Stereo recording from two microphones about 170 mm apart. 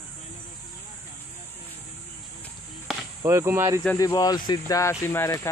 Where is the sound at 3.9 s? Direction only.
20° left (ahead or behind).